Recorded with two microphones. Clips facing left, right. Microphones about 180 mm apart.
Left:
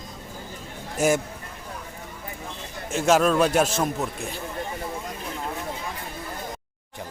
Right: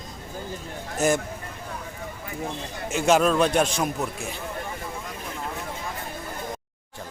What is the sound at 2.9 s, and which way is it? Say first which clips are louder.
A man's voice: even; centre (ahead or behind).